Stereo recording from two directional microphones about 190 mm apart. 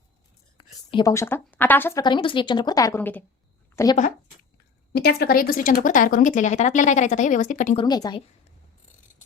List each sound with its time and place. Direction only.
0.5 s speech: 25° left (ahead or behind); by 3.2 s 10° left (ahead or behind)
4.9 s speech: 55° left (ahead or behind)
7.8 s speech: 20° left (ahead or behind)